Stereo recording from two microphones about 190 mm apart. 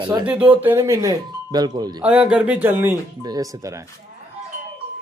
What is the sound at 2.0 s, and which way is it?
Speech, 5° right (ahead or behind).